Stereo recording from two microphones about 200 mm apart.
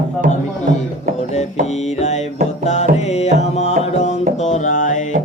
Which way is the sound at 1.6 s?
35° left (ahead or behind).